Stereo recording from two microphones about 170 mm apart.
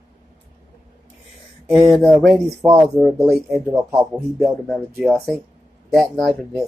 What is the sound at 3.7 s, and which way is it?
Speech, 15° right (ahead or behind).